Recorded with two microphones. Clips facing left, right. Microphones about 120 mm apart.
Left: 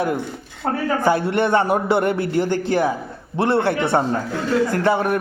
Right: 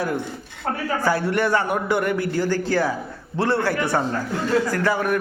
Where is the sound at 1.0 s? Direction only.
20° left (ahead or behind).